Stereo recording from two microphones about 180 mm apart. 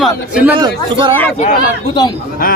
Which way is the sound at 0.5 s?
25° right (ahead or behind).